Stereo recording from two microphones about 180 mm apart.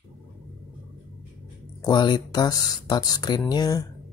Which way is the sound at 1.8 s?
25° left (ahead or behind).